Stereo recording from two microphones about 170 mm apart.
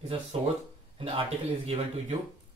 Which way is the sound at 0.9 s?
35° right (ahead or behind).